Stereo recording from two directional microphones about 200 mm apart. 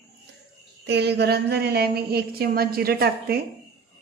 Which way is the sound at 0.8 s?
55° right (ahead or behind).